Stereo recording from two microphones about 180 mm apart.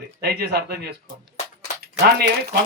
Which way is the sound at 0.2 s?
65° right (ahead or behind).